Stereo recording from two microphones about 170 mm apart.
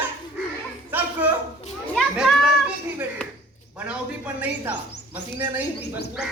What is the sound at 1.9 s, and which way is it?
Children playing, centre (ahead or behind).